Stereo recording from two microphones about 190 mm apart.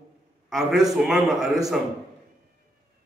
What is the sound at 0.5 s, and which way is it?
A man's voice, centre (ahead or behind).